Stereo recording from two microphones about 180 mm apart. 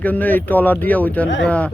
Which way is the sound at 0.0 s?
10° left (ahead or behind).